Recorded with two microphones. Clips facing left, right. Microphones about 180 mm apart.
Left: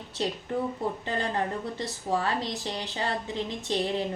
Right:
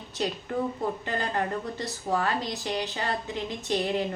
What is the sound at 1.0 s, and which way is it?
Speech, 25° left (ahead or behind).